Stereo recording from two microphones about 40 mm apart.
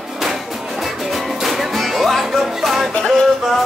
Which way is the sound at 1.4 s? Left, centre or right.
Centre.